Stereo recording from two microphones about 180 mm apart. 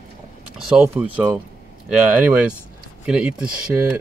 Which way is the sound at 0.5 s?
5° right (ahead or behind).